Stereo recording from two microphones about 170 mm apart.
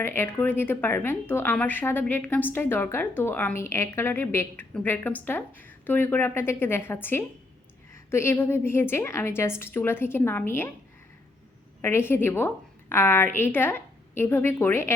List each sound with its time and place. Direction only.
0.0 s a woman's voice: 15° left (ahead or behind)
11.8 s a woman's voice: 15° left (ahead or behind)